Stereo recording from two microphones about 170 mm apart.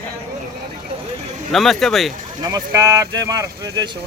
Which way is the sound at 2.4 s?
20° right (ahead or behind).